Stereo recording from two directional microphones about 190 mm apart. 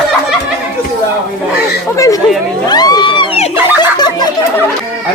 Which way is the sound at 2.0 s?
15° left (ahead or behind).